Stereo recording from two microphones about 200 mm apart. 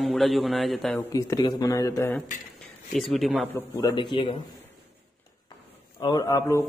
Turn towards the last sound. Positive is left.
turn(degrees=15)  # may be behind; listen again after turning